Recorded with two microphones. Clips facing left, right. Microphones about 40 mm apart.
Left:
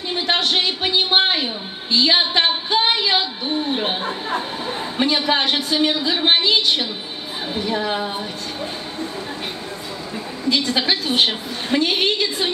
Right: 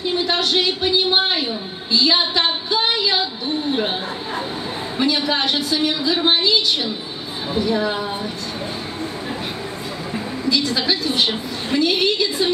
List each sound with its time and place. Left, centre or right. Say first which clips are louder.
0.3 s a sound: left 3 dB; left
4.9 s a woman's voice: left 1 dB; left
10.5 s a woman's voice: left 1 dB; left